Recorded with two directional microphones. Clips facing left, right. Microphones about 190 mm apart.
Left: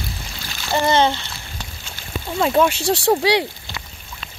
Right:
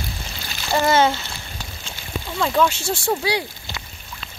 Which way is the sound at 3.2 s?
80° left.